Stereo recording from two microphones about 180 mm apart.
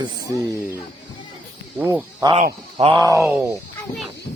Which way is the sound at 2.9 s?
20° right (ahead or behind).